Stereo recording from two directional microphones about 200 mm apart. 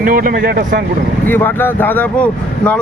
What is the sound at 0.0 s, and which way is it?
Speech, 45° right (ahead or behind).